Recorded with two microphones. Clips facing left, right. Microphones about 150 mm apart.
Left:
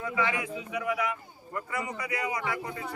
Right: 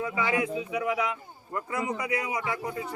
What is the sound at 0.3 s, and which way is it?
Speech, 25° right (ahead or behind).